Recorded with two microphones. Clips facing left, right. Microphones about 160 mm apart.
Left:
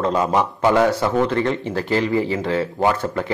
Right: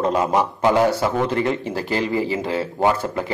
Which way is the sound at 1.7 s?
25° right (ahead or behind).